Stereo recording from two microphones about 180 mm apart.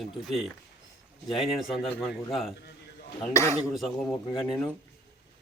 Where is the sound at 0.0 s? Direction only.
Centre (ahead or behind).